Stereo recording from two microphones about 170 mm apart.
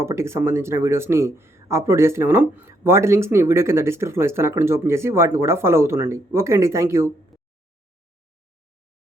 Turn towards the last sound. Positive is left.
turn(degrees=-15)  # may be behind; listen again after turning